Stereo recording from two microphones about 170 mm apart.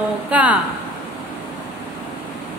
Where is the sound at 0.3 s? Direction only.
10° right (ahead or behind).